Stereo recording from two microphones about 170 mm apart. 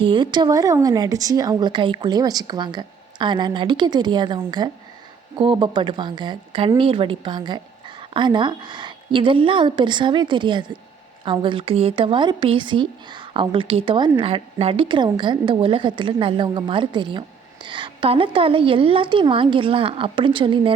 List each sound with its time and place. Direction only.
0.0 s a woman's voice: 30° right (ahead or behind)